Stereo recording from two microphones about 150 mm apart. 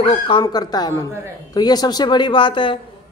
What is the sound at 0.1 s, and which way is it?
A man's voice, 30° left (ahead or behind).